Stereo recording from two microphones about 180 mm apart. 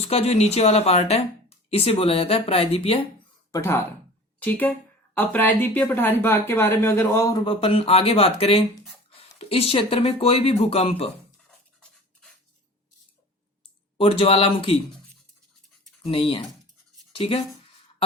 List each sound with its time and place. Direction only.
0.0 s a woman's voice: 35° left (ahead or behind)
3.5 s speech: 15° left (ahead or behind)
7.4 s a woman's voice: 30° left (ahead or behind)
14.0 s a woman's voice: 30° left (ahead or behind)
16.0 s a woman's voice: 30° left (ahead or behind)